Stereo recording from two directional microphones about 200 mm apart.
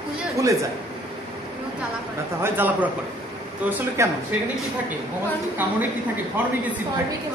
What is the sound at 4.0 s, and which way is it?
Speech, 15° right (ahead or behind).